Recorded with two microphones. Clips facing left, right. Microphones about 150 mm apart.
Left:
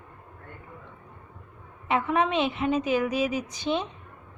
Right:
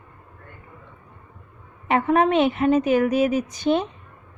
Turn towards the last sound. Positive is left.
turn(degrees=-50)  # may be behind; listen again after turning